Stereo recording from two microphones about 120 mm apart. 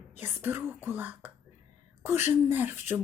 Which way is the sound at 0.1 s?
15° right (ahead or behind).